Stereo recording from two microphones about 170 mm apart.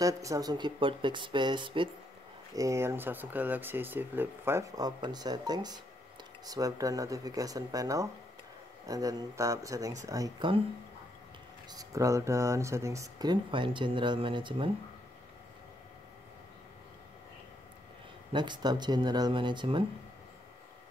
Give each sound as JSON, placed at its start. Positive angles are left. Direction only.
{"t": 0.0, "sound": "speech", "side_deg": -20}
{"t": 2.5, "sound": "speech", "side_deg": -20}
{"t": 11.7, "sound": "speech", "side_deg": -20}
{"t": 18.3, "sound": "speech", "side_deg": -25}